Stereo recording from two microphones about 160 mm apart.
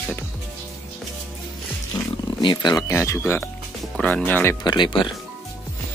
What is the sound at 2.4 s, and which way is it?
Speech, 30° left (ahead or behind).